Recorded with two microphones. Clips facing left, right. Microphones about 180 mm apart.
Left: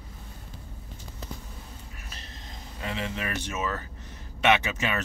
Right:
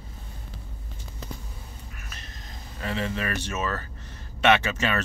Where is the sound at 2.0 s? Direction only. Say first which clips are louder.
Even; 30° left (ahead or behind).